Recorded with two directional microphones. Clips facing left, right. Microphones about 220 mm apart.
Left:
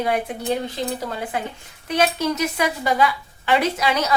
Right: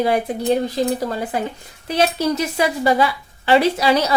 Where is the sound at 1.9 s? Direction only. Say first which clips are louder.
Right 2 dB; 30° right (ahead or behind).